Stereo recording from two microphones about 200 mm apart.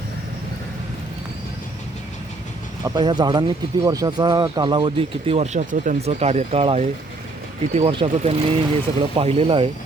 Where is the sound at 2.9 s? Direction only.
20° right (ahead or behind).